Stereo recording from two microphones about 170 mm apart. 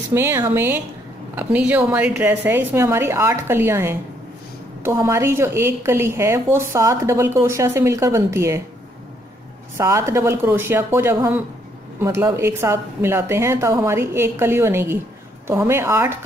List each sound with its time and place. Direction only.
0.1 s a woman's voice: 15° right (ahead or behind)
9.8 s a woman's voice: 15° right (ahead or behind)